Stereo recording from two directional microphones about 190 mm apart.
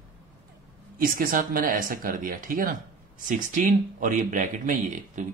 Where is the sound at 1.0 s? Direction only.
50° right (ahead or behind).